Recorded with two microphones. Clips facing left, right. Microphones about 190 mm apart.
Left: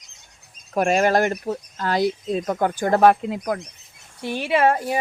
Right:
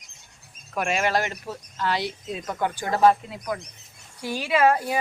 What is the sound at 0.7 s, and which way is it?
Speech, 40° left (ahead or behind).